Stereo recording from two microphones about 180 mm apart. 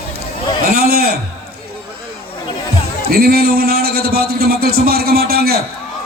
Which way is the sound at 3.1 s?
55° right (ahead or behind).